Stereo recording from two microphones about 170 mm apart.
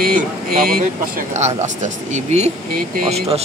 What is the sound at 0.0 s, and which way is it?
Speech, 55° right (ahead or behind).